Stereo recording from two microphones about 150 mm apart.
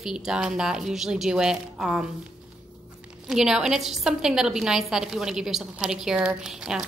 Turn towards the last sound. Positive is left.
turn(degrees=-5)  # may be behind; listen again after turning